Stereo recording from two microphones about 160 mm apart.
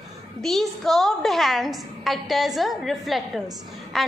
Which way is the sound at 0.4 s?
Centre (ahead or behind).